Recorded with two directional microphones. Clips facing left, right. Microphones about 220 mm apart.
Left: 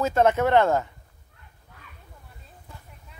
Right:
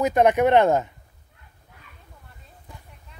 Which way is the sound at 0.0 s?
15° right (ahead or behind).